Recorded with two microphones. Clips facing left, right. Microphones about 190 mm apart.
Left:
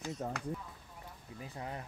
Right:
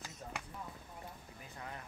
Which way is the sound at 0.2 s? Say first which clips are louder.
Left 9 dB; 60° left (ahead or behind).